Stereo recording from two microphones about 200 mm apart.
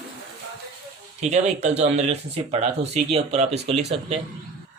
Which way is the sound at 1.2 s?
35° right (ahead or behind).